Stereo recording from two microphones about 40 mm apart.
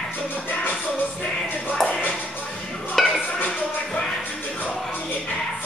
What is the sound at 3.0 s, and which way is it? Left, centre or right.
Dishes, centre.